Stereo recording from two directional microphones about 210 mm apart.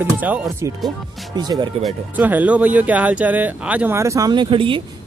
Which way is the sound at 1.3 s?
20° right (ahead or behind).